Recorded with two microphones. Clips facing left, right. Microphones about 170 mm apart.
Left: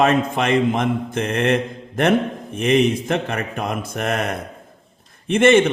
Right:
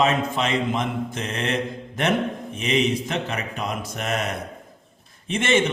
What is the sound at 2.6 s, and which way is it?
Speech, 55° left (ahead or behind).